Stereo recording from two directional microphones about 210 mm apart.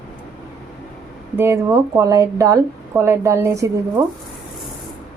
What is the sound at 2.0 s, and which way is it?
A woman's voice, 15° right (ahead or behind).